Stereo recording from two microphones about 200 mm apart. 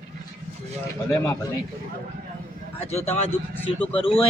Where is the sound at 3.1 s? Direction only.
10° left (ahead or behind).